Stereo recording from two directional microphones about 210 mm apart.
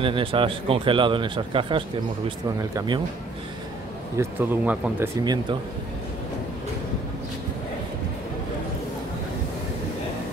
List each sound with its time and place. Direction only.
0.0 s speech: 25° right (ahead or behind)
4.2 s speech: 10° right (ahead or behind)
5.2 s speech: 20° right (ahead or behind)